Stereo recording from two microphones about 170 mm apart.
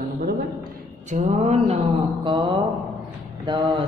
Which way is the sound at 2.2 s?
25° right (ahead or behind).